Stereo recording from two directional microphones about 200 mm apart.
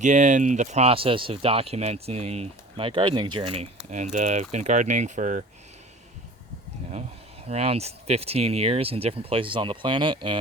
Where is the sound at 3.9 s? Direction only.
40° right (ahead or behind).